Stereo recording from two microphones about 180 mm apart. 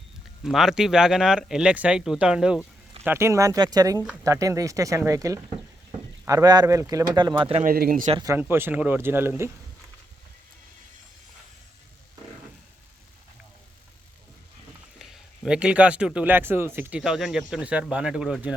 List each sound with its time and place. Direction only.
0.4 s speech: centre (ahead or behind); by 7.6 s 30° right (ahead or behind)
7.6 s speech: 55° right (ahead or behind)
8.2 s speech: 15° right (ahead or behind)
15.4 s speech: 5° right (ahead or behind)